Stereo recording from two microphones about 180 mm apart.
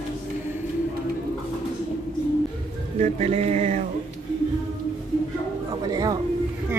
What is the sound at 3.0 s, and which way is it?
Music, 40° right (ahead or behind).